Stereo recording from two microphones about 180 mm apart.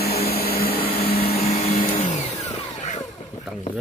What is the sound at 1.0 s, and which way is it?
Vacuum cleaner, 60° left (ahead or behind).